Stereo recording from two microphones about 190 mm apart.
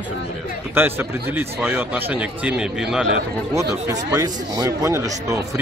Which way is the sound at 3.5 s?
20° right (ahead or behind).